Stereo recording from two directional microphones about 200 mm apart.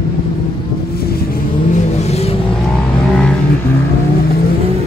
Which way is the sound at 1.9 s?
30° left (ahead or behind).